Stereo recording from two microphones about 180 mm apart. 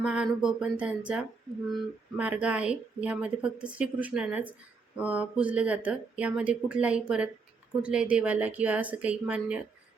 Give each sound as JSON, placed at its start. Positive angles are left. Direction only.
{"t": 0.0, "sound": "speech", "side_deg": -5}